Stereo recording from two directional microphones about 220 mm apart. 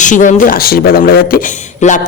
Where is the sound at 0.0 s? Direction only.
35° left (ahead or behind).